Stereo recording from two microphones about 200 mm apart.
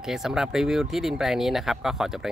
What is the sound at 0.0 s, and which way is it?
Speech, centre (ahead or behind).